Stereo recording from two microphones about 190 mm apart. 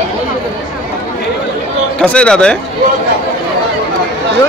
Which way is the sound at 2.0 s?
5° left (ahead or behind).